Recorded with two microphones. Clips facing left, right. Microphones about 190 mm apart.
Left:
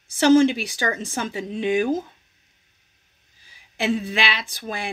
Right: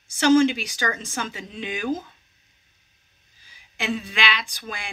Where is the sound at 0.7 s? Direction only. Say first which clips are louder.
Left 3 dB; 35° left (ahead or behind).